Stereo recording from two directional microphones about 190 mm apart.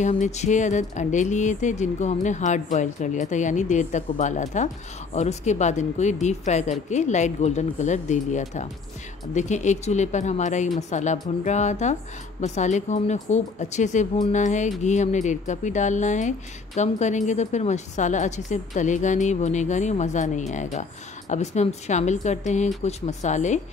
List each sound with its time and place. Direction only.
0.0 s a woman's voice: 40° left (ahead or behind)